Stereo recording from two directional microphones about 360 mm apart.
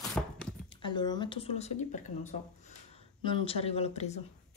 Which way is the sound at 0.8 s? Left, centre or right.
Centre.